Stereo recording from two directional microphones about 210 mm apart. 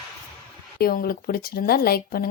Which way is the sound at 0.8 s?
45° left (ahead or behind).